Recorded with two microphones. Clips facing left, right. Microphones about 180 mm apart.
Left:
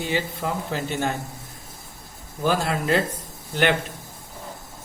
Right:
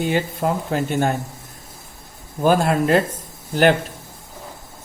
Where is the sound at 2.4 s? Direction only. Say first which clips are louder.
Right 6 dB; 50° right (ahead or behind).